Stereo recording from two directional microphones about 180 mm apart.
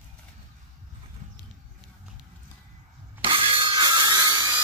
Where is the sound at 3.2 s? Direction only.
30° right (ahead or behind).